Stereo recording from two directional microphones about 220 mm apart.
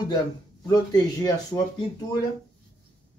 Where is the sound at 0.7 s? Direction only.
15° left (ahead or behind).